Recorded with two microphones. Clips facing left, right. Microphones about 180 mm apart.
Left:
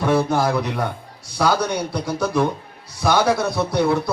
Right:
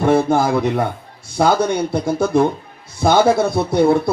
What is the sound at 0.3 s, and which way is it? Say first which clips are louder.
Speech: right 4 dB; 50° right (ahead or behind).